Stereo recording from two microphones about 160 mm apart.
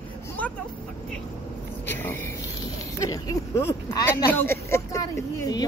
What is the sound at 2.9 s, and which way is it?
Speech, 20° left (ahead or behind).